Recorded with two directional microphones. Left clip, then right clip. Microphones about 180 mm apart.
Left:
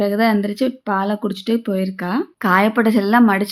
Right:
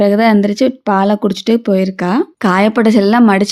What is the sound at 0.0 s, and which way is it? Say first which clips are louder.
Speech: right 7 dB; 40° right (ahead or behind).